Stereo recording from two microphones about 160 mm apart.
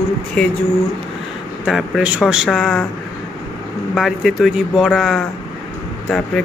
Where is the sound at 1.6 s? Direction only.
Centre (ahead or behind).